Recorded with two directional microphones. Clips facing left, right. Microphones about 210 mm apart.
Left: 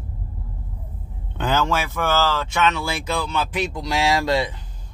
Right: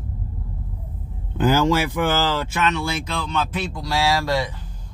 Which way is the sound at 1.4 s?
10° right (ahead or behind).